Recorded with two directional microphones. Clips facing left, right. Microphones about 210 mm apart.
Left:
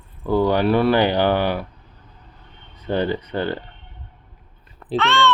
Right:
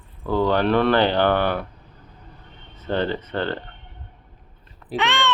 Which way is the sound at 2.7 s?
10° left (ahead or behind).